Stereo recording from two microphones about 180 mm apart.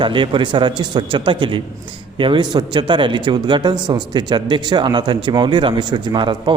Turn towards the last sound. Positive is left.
turn(degrees=-25)  # may be behind; listen again after turning